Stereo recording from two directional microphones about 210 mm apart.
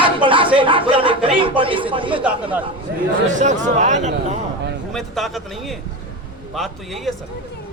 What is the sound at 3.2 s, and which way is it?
Speech, 35° right (ahead or behind).